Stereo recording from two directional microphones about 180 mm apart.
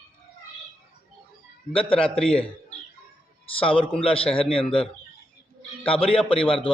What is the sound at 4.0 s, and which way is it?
Speech, 30° left (ahead or behind).